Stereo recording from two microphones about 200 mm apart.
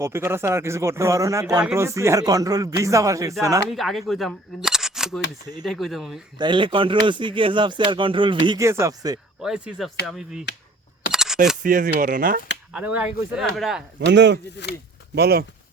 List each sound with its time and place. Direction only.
0.0 s speech: 10° right (ahead or behind)
3.7 s speech: centre (ahead or behind)
6.4 s speech: 25° right (ahead or behind)
9.4 s speech: 5° right (ahead or behind)
11.1 s camera: centre (ahead or behind)
11.6 s speech: 40° right (ahead or behind)
12.7 s speech: 10° right (ahead or behind)
14.0 s speech: 60° right (ahead or behind)
14.6 s speech: 60° left (ahead or behind)
15.1 s speech: 50° right (ahead or behind)